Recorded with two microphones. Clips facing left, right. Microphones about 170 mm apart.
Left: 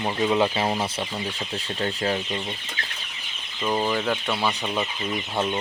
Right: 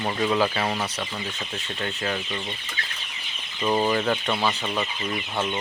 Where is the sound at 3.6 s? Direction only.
5° right (ahead or behind).